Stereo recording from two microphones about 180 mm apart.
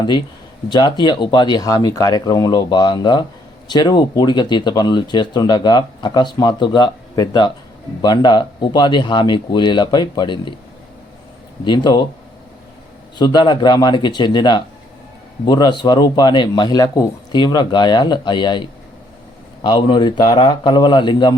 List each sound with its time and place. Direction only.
0.7 s speech: 25° left (ahead or behind)
11.6 s speech: 25° left (ahead or behind)
13.1 s speech: 25° left (ahead or behind)